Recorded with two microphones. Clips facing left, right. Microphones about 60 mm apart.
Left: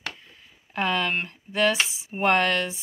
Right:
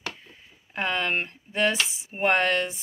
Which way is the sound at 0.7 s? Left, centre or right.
Centre.